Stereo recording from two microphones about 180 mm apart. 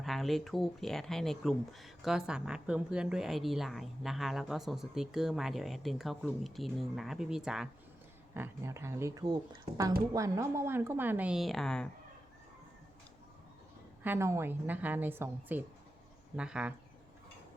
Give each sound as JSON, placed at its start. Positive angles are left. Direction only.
{"t": 0.0, "sound": "speech", "side_deg": 0}
{"t": 8.3, "sound": "a woman's voice", "side_deg": -15}
{"t": 14.0, "sound": "a woman's voice", "side_deg": -15}